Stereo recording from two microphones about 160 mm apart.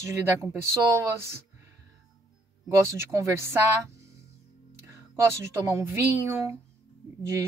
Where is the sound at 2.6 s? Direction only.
15° right (ahead or behind).